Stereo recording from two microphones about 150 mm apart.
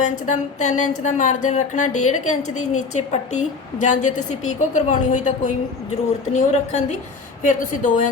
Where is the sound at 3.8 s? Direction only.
55° left (ahead or behind).